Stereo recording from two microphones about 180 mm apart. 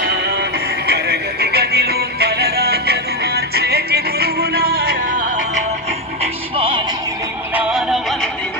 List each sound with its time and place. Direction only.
0.0 s music: 65° right (ahead or behind); by 5.6 s 45° right (ahead or behind)
6.6 s music: 30° right (ahead or behind)
7.5 s music: 5° right (ahead or behind)